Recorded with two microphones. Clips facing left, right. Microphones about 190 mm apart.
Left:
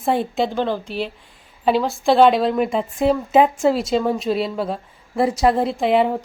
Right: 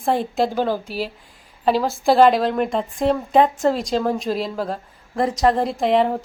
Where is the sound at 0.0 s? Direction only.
Centre (ahead or behind).